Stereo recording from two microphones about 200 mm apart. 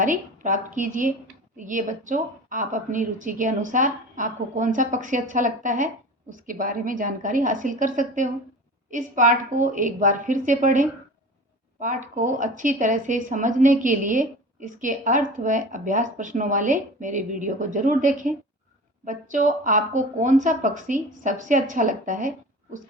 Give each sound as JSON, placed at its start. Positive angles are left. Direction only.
{"t": 0.0, "sound": "a woman's voice", "side_deg": -40}